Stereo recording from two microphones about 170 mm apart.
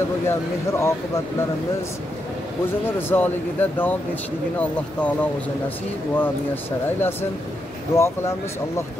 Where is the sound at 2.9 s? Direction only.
10° left (ahead or behind).